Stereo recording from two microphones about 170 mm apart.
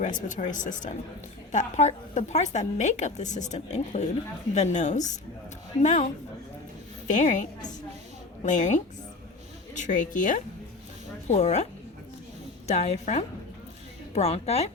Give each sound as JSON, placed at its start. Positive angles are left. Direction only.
{"t": 0.0, "sound": "a woman's voice", "side_deg": 45}
{"t": 7.1, "sound": "a woman's voice", "side_deg": 45}
{"t": 8.4, "sound": "a woman's voice", "side_deg": 45}